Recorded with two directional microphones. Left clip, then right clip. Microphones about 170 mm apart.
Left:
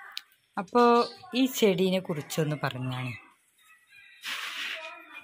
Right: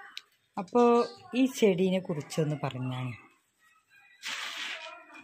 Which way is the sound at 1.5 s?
5° right (ahead or behind).